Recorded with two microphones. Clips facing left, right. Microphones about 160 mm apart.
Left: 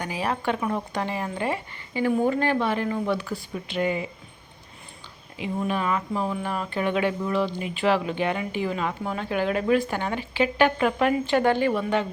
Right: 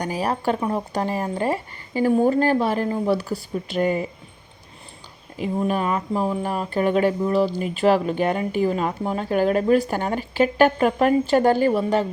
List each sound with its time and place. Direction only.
0.0 s speech: 40° right (ahead or behind)
5.4 s speech: 40° right (ahead or behind)